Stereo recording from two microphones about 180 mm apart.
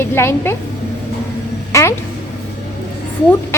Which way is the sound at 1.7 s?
15° left (ahead or behind).